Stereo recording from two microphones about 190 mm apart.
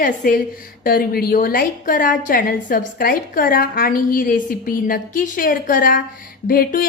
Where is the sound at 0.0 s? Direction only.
45° left (ahead or behind).